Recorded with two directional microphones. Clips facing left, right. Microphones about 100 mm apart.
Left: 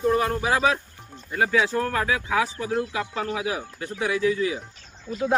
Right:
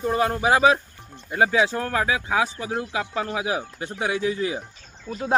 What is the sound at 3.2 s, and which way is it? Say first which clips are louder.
Speech: right 1 dB; 20° right (ahead or behind).